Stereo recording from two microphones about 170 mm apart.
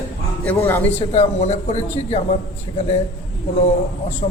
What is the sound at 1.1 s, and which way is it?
Speech, 40° left (ahead or behind).